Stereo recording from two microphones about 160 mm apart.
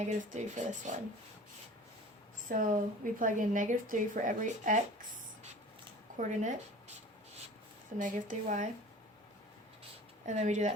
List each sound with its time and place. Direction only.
0.0 s speech: 50° right (ahead or behind)
2.5 s a woman's voice: 60° right (ahead or behind)
6.1 s a sound: 55° right (ahead or behind)
7.9 s speech: 55° right (ahead or behind)
10.2 s speech: 50° right (ahead or behind)